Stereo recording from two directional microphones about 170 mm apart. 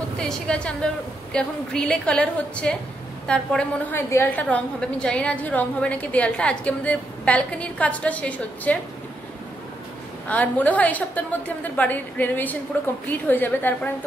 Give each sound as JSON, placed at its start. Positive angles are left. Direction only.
{"t": 0.2, "sound": "a woman's voice", "side_deg": 5}
{"t": 10.2, "sound": "a woman's voice", "side_deg": 10}